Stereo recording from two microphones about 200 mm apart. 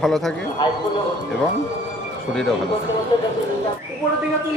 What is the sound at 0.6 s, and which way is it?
Speech, 25° left (ahead or behind).